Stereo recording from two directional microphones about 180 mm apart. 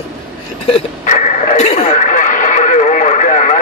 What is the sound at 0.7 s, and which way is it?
Speech, 40° left (ahead or behind).